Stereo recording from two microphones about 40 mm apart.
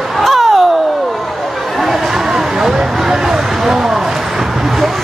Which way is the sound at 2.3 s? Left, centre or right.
Centre.